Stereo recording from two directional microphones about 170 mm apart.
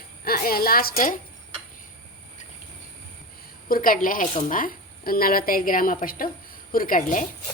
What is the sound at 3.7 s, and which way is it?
A woman's voice, 55° left (ahead or behind).